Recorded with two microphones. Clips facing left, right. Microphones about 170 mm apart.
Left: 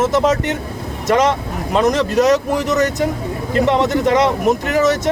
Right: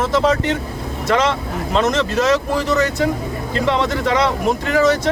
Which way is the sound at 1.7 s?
15° left (ahead or behind).